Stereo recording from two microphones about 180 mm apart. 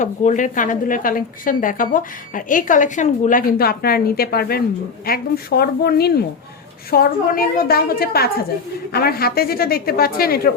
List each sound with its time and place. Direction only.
0.0 s a woman's voice: 45° left (ahead or behind)